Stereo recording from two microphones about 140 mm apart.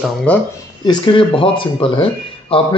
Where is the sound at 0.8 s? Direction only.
35° left (ahead or behind).